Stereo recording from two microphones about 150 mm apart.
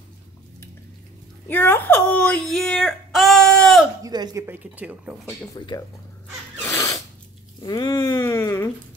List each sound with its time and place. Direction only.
1.5 s whimper: 15° left (ahead or behind)
4.0 s a woman's voice: 25° right (ahead or behind)
4.5 s speech: 10° right (ahead or behind)
5.6 s speech: 30° left (ahead or behind)
6.6 s cat: 20° left (ahead or behind)
7.6 s a sound: 30° left (ahead or behind)